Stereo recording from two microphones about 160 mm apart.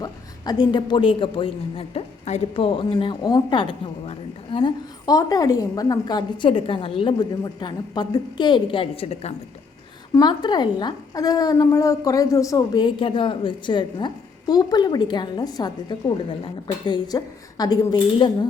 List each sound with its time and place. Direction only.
0.0 s a man's voice: 25° left (ahead or behind)
5.0 s a woman's voice: 20° left (ahead or behind); by 9.3 s 40° left (ahead or behind)
10.2 s a woman's voice: 25° left (ahead or behind)